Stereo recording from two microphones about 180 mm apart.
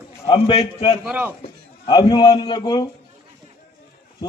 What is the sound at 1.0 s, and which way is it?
Speech, 10° right (ahead or behind).